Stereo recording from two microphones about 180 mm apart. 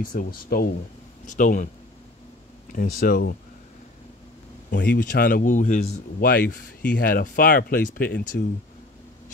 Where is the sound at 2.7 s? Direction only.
50° left (ahead or behind).